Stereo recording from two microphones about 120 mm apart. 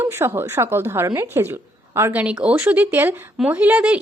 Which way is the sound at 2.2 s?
10° right (ahead or behind).